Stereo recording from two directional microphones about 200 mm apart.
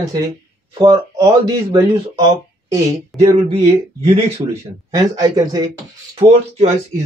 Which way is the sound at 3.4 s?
30° right (ahead or behind).